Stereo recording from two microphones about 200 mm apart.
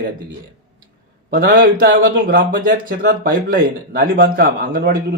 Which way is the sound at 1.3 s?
45° right (ahead or behind).